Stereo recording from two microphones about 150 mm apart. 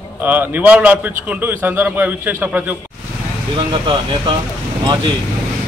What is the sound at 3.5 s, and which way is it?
Speech, 35° right (ahead or behind).